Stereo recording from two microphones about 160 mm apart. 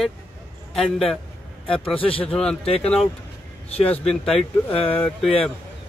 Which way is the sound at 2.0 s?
35° left (ahead or behind).